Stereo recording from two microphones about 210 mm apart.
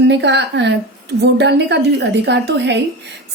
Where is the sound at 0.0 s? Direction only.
55° right (ahead or behind).